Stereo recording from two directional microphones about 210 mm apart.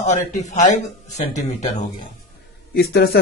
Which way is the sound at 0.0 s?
35° left (ahead or behind).